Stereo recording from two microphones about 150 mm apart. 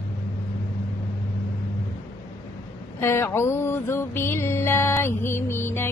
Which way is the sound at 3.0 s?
15° left (ahead or behind).